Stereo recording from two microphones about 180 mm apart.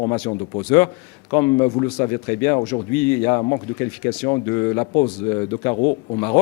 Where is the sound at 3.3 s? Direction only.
30° left (ahead or behind).